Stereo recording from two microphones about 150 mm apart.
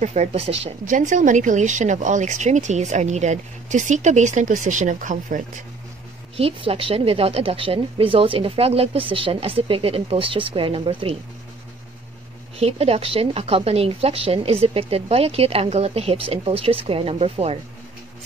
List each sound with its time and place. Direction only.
0.0 s speech: 50° right (ahead or behind)
0.8 s speech: 55° right (ahead or behind)
6.3 s a woman's voice: 40° right (ahead or behind)
12.5 s a woman's voice: 45° right (ahead or behind)